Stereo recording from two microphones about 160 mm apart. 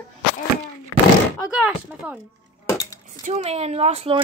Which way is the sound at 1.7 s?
5° right (ahead or behind).